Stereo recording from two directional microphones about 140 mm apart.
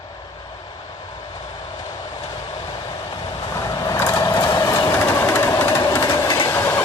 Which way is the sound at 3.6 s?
25° left (ahead or behind).